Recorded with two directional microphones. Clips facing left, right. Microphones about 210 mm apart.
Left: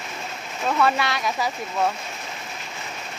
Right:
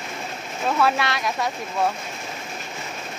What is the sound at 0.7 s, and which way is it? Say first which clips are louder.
Speech: even; centre (ahead or behind).